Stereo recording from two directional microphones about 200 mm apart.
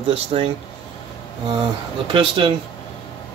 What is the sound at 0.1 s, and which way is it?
Speech, 30° right (ahead or behind).